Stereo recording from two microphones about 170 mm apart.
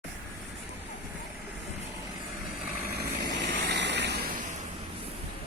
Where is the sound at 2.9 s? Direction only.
65° right (ahead or behind).